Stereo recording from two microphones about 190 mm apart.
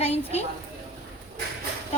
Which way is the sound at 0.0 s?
35° left (ahead or behind).